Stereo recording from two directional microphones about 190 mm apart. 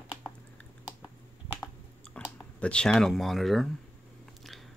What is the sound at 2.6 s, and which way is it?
Speech, 5° left (ahead or behind).